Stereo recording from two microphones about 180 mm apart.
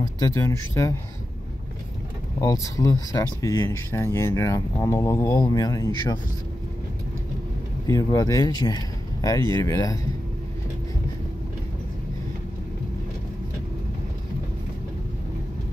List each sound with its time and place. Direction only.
0.0 s speech: 20° left (ahead or behind)
2.4 s speech: 20° left (ahead or behind)
7.8 s speech: 20° left (ahead or behind)